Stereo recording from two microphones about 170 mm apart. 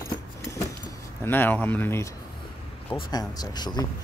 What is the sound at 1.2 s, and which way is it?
Speech, 10° left (ahead or behind).